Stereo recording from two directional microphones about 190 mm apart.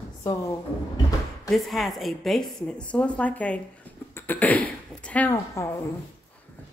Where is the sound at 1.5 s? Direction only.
Centre (ahead or behind).